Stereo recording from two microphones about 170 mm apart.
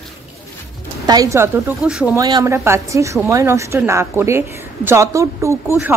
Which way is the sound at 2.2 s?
20° right (ahead or behind).